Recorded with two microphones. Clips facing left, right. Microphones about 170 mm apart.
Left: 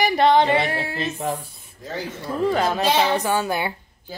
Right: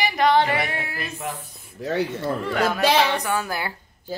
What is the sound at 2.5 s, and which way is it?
Speech, 30° left (ahead or behind).